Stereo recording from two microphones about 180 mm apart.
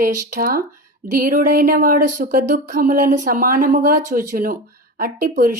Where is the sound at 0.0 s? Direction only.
50° right (ahead or behind).